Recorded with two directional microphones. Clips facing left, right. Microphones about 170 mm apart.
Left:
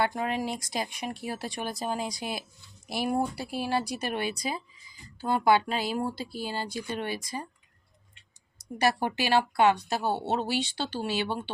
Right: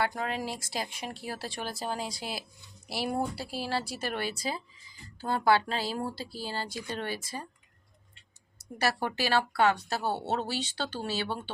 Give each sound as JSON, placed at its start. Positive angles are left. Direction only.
{"t": 0.0, "sound": "speech", "side_deg": 20}
{"t": 8.8, "sound": "speech", "side_deg": 15}